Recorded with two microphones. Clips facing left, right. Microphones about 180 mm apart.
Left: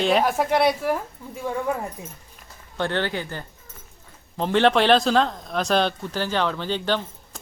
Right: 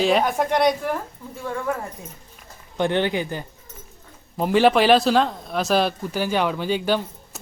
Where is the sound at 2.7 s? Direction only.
15° right (ahead or behind).